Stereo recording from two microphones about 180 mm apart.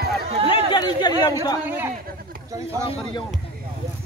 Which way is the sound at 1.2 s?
20° left (ahead or behind).